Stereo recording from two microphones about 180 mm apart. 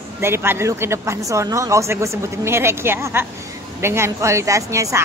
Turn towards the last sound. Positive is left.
turn(degrees=-15)  # may be behind; listen again after turning